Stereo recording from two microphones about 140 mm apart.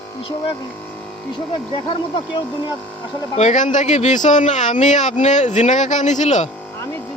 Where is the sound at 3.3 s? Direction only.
60° left (ahead or behind).